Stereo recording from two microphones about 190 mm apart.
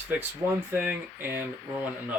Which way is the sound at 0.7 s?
10° right (ahead or behind).